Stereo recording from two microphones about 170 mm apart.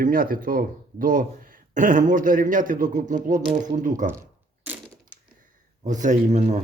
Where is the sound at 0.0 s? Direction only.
55° right (ahead or behind).